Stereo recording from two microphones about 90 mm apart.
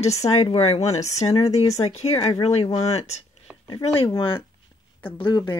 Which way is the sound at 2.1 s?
40° left (ahead or behind).